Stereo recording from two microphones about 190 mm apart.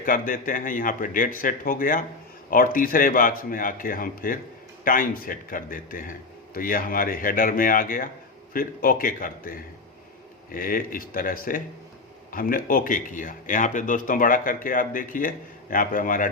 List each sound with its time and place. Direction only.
0.0 s speech: 45° left (ahead or behind)